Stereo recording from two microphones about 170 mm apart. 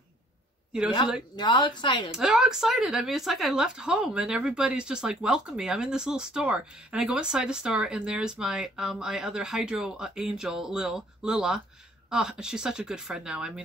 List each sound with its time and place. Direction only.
1.3 s speech: 25° left (ahead or behind)
2.0 s speech: 5° right (ahead or behind)